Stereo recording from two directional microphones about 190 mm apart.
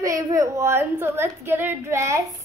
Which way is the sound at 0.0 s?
15° right (ahead or behind).